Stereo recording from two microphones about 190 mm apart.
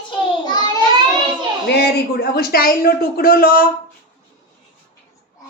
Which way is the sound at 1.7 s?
60° left (ahead or behind).